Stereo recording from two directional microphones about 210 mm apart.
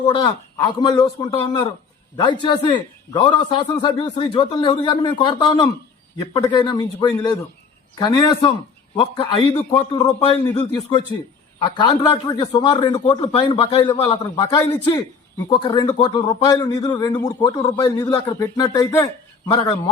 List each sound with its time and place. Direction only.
0.1 s a man's voice: 20° left (ahead or behind)